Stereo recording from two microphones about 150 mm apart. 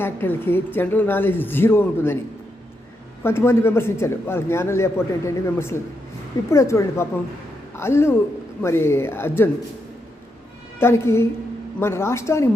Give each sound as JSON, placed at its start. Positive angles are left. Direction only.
{"t": 0.0, "sound": "a man's voice", "side_deg": 15}
{"t": 3.2, "sound": "a man's voice", "side_deg": 15}
{"t": 10.8, "sound": "a man's voice", "side_deg": 15}